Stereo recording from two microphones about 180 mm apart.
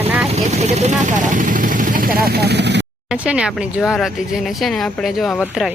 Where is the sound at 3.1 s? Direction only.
5° right (ahead or behind).